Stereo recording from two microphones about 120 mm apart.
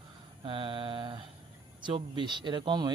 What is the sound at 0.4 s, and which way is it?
Mantra, 45° right (ahead or behind).